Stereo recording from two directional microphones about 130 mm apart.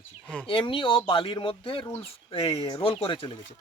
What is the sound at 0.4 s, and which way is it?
Speech, 40° left (ahead or behind).